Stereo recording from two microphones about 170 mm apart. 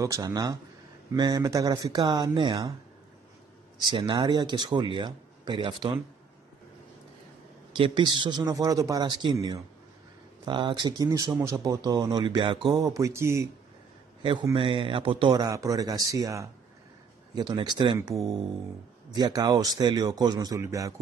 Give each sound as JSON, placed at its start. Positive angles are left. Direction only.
{"t": 0.0, "sound": "a man's voice", "side_deg": -20}
{"t": 3.8, "sound": "a man's voice", "side_deg": -30}
{"t": 7.7, "sound": "a man's voice", "side_deg": -25}
{"t": 14.5, "sound": "a man's voice", "side_deg": -30}